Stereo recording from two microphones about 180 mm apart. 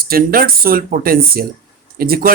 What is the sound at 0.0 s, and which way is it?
Speech, 55° right (ahead or behind).